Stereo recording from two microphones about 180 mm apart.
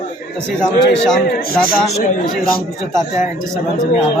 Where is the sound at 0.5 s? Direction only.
5° left (ahead or behind).